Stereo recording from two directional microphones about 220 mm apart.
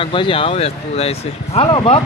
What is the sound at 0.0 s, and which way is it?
Speech, 25° left (ahead or behind).